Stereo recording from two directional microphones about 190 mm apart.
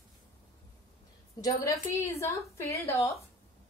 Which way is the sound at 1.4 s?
20° left (ahead or behind).